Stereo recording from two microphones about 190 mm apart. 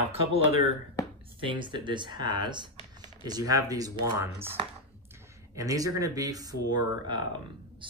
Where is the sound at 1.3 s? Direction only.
25° right (ahead or behind).